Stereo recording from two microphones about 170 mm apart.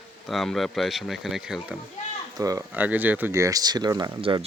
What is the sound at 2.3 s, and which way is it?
Speech, 20° right (ahead or behind).